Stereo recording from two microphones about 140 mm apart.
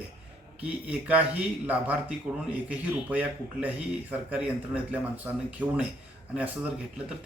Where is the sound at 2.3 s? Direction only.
5° right (ahead or behind).